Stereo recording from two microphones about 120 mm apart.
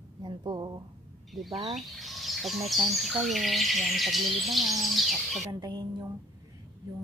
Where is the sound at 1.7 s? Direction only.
Centre (ahead or behind).